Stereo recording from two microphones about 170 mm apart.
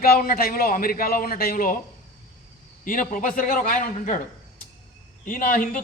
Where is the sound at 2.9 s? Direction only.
55° left (ahead or behind).